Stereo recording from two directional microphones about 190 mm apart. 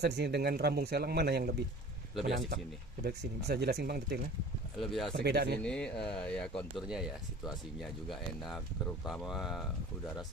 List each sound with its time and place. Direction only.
0.0 s speech: 60° right (ahead or behind)
4.7 s speech: centre (ahead or behind)
5.1 s speech: 60° right (ahead or behind)
5.6 s speech: 5° left (ahead or behind)